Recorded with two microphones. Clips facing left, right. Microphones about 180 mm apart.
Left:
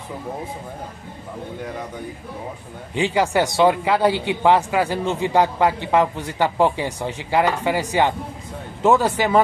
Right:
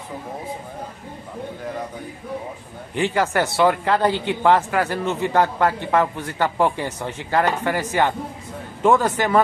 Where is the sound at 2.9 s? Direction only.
15° left (ahead or behind).